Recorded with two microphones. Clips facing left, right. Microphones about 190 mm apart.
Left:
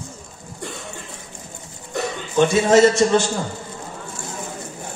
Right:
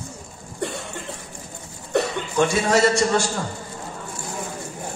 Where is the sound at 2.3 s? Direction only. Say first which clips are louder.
Left 5 dB; 20° left (ahead or behind).